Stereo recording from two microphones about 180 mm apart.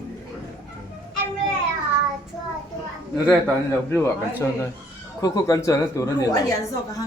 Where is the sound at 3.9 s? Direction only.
10° left (ahead or behind).